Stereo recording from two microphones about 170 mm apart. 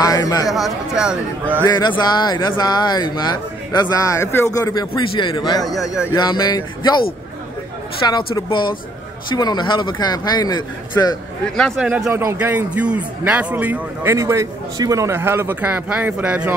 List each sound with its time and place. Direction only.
0.0 s speech: 20° left (ahead or behind)
0.5 s speech: centre (ahead or behind)
1.7 s speech: 25° left (ahead or behind)
5.0 s a man's voice: 30° left (ahead or behind)
5.6 s speech: centre (ahead or behind)
6.1 s speech: 25° left (ahead or behind)
8.1 s speech: 30° left (ahead or behind)
11.5 s a man's voice: centre (ahead or behind)